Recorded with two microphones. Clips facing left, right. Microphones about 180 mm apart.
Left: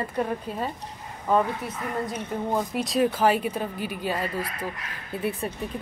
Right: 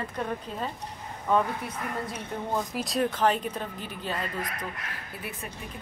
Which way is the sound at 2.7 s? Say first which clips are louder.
Left 4 dB; centre (ahead or behind).